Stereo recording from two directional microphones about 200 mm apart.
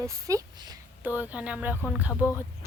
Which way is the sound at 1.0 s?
10° right (ahead or behind).